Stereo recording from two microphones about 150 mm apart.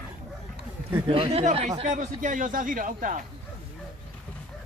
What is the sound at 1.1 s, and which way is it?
Speech, 40° right (ahead or behind).